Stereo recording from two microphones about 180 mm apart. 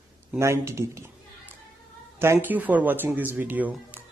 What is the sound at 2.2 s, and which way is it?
Speech, 10° right (ahead or behind).